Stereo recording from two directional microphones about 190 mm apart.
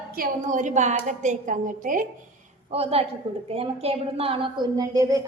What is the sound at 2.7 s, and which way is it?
A woman's voice, 30° right (ahead or behind).